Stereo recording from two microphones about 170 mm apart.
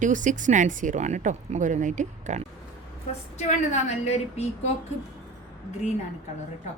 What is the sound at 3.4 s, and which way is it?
A woman's voice, 45° left (ahead or behind).